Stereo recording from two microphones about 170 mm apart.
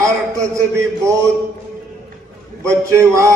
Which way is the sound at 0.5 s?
15° right (ahead or behind).